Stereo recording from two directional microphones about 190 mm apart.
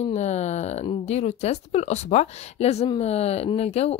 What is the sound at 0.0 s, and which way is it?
Speech, 35° left (ahead or behind).